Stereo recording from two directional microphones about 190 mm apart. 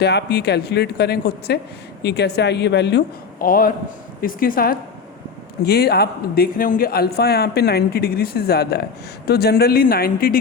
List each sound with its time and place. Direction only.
0.0 s speech: 60° left (ahead or behind)